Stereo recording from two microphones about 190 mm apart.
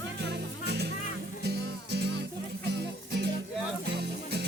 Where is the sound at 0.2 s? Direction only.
65° right (ahead or behind).